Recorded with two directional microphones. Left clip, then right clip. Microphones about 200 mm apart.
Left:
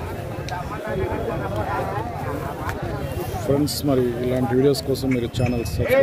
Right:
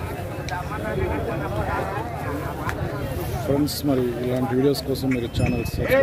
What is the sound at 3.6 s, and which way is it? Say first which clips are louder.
Speech: left 2 dB; 10° left (ahead or behind).